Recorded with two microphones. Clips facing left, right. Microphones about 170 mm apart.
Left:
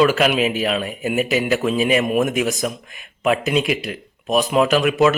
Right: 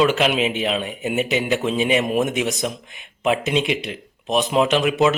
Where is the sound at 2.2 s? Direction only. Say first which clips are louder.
Left 2 dB; 25° right (ahead or behind).